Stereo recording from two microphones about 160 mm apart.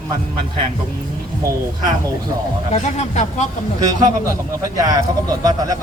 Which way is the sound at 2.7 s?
45° left (ahead or behind).